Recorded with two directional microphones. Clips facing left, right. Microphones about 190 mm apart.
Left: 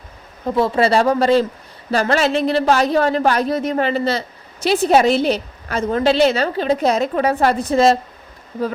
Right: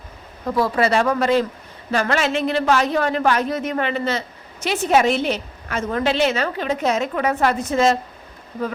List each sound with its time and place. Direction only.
0.4 s a woman's voice: 25° left (ahead or behind)